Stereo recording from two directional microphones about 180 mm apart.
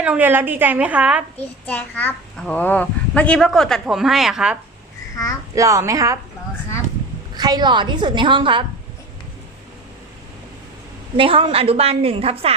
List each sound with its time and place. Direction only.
0.0 s a woman's voice: 10° right (ahead or behind)
1.6 s a child's voice: 10° left (ahead or behind)
5.5 s a woman's voice: 15° right (ahead or behind)
7.3 s a woman's voice: 25° right (ahead or behind)
11.2 s a woman's voice: 30° right (ahead or behind)